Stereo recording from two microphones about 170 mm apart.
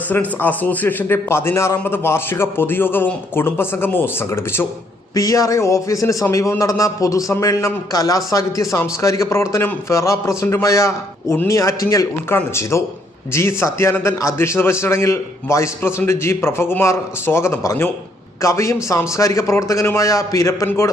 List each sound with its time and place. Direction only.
0.1 s a man's voice: 10° left (ahead or behind)